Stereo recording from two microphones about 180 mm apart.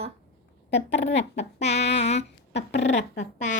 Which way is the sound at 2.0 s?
40° left (ahead or behind).